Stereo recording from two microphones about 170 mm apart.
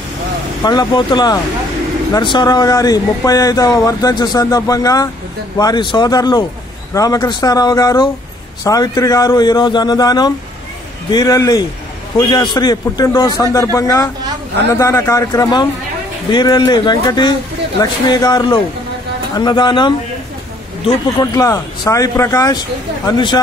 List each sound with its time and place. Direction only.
0.7 s speech: 25° left (ahead or behind)
21.2 s speech: 20° left (ahead or behind)